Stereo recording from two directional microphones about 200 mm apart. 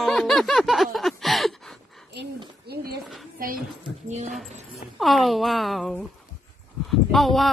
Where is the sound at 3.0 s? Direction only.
Centre (ahead or behind).